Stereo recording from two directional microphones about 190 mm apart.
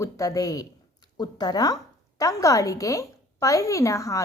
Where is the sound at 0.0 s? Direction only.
20° left (ahead or behind).